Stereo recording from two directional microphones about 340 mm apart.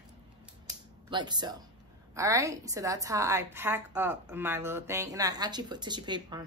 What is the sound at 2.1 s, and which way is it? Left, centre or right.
A woman's voice, centre.